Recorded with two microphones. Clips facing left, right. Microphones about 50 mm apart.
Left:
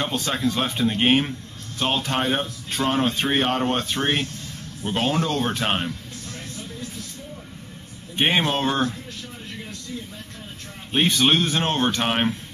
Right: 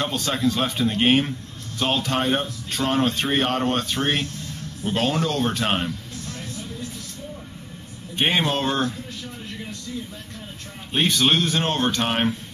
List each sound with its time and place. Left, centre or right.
0.0 s speech: centre
8.2 s speech: centre
10.9 s speech: centre
12.1 s speech: centre